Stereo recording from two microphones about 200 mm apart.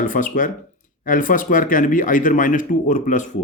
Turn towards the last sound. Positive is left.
turn(degrees=40)  # may be behind; listen again after turning